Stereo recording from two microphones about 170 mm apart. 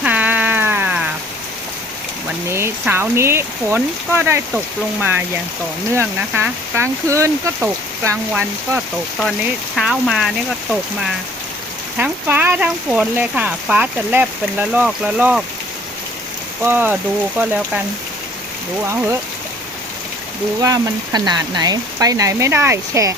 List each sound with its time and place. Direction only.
0.0 s a sound: 10° right (ahead or behind)
2.5 s speech: 15° right (ahead or behind)
9.7 s speech: centre (ahead or behind)
16.6 s speech: 10° right (ahead or behind)
20.6 s speech: 20° right (ahead or behind)